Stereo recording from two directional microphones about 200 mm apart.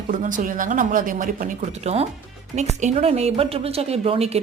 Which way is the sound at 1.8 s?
30° right (ahead or behind).